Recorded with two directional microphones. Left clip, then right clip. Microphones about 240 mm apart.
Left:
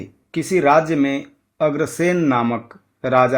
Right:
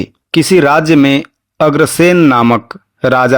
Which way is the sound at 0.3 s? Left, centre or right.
Right.